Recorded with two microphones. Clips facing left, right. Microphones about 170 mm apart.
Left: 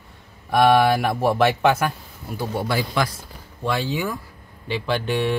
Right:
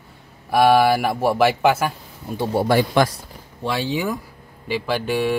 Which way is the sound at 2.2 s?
25° right (ahead or behind).